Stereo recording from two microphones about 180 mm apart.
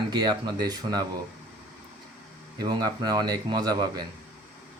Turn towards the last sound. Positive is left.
turn(degrees=-20)  # may be behind; listen again after turning